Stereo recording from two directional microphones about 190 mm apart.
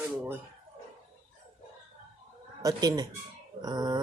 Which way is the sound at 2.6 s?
20° right (ahead or behind).